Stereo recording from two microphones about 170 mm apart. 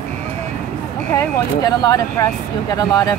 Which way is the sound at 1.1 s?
20° left (ahead or behind).